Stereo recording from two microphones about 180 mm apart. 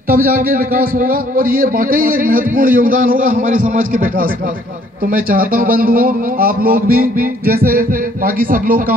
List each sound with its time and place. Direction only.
0.1 s a man's voice: 55° right (ahead or behind)